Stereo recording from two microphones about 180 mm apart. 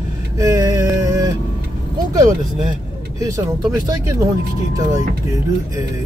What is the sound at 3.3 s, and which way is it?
Speech, 20° right (ahead or behind).